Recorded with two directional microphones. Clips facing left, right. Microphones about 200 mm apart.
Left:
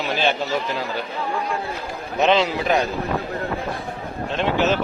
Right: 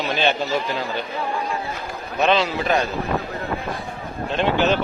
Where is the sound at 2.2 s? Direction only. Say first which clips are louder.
Left 1 dB; 20° left (ahead or behind).